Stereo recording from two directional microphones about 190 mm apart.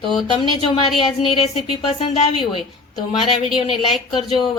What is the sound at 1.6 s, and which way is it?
A woman's voice, 30° left (ahead or behind).